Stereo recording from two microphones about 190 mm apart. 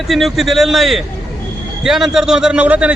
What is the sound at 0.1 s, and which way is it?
Speech, centre (ahead or behind).